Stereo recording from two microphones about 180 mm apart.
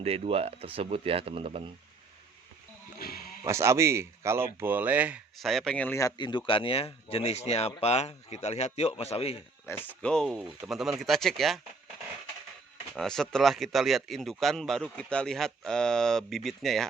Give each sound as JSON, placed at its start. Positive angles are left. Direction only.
{"t": 0.0, "sound": "speech", "side_deg": -35}
{"t": 3.0, "sound": "music", "side_deg": 55}
{"t": 3.4, "sound": "speech", "side_deg": -15}
{"t": 9.6, "sound": "speech", "side_deg": 10}
{"t": 12.9, "sound": "speech", "side_deg": 0}